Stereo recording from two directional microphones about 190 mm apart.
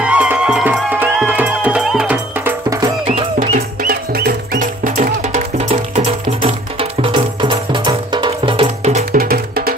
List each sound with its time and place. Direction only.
0.0 s music: 5° right (ahead or behind)
3.1 s music: 35° right (ahead or behind)
3.8 s music: 50° right (ahead or behind); by 9.2 s 35° right (ahead or behind)
9.2 s music: 50° right (ahead or behind)